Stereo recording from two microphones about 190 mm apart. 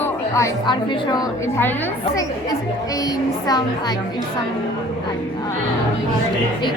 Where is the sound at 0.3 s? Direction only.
20° left (ahead or behind).